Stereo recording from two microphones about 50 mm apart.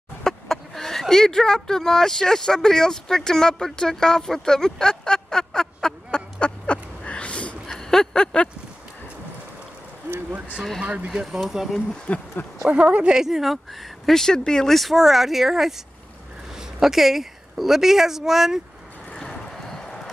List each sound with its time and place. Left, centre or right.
0.2 s speech: centre
6.1 s a sound: left
7.6 s a sound: centre
11.1 s speech: centre
12.1 s speech: left
12.6 s speech: right
13.2 s speech: centre
19.1 s boat: centre